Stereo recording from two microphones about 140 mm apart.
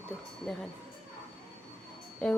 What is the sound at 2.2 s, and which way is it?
Speech, 5° left (ahead or behind).